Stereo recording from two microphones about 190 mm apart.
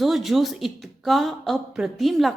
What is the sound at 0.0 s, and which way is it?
A woman's voice, centre (ahead or behind).